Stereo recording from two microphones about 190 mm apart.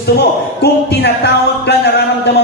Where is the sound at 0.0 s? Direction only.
60° left (ahead or behind).